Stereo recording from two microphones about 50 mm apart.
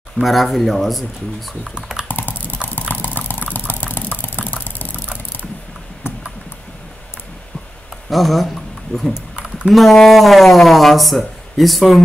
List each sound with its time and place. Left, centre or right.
0.2 s speech: centre
1.8 s computer keyboard: centre
2.0 s computer keyboard: left
2.9 s a sound: left
6.0 s a sound: left
8.1 s speech: centre
9.7 s speech: centre